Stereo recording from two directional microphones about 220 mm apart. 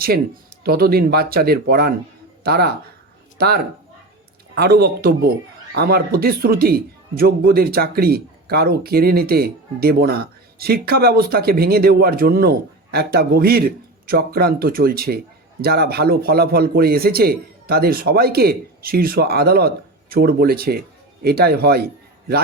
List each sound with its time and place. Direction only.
0.6 s a man's voice: 45° right (ahead or behind)